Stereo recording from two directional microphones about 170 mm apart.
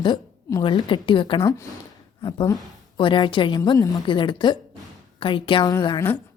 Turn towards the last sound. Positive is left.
turn(degrees=20)  # may be behind; listen again after turning